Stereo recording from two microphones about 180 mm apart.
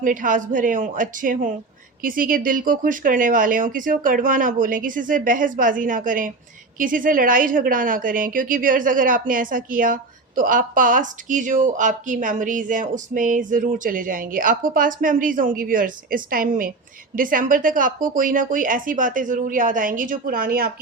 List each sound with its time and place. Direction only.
0.0 s a woman's voice: 45° right (ahead or behind)